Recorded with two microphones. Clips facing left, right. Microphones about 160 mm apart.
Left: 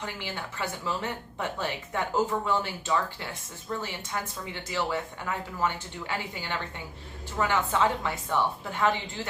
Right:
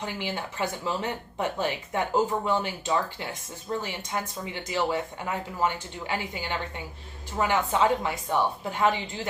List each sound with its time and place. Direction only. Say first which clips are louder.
0.0 s speech: right 4 dB; 15° right (ahead or behind)